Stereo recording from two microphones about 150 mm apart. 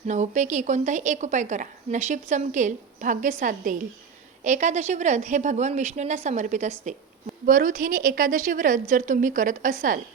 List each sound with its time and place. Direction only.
0.1 s a woman's voice: 55° right (ahead or behind)